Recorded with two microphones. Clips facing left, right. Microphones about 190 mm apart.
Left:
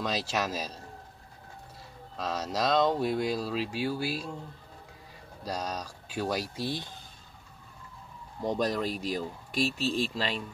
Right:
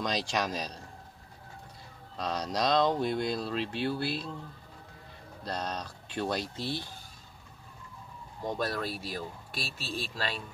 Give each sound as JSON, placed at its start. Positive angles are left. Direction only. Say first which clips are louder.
{"t": 0.0, "sound": "speech", "louder": "even", "side_deg": 5}
{"t": 2.1, "sound": "speech", "louder": "even", "side_deg": 5}
{"t": 5.4, "sound": "speech", "louder": "left 1 dB", "side_deg": 10}
{"t": 8.5, "sound": "speech", "louder": "left 4 dB", "side_deg": 15}